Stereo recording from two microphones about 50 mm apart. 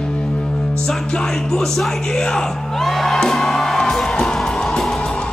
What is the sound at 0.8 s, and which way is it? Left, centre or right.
Music, centre.